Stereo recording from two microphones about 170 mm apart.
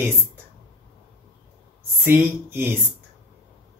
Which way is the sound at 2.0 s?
10° right (ahead or behind).